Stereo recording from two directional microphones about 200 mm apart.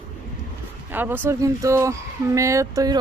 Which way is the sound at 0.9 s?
10° right (ahead or behind).